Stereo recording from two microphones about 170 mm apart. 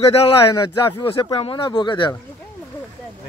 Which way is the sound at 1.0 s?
30° left (ahead or behind).